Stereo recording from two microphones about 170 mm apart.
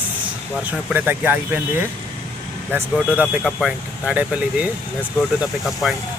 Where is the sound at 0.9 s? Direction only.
10° right (ahead or behind).